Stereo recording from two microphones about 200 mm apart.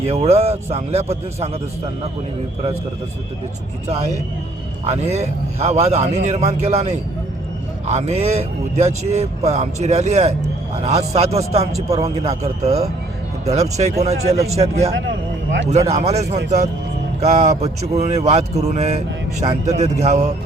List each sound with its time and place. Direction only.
0.0 s speech: 30° right (ahead or behind)
4.9 s speech: 35° right (ahead or behind)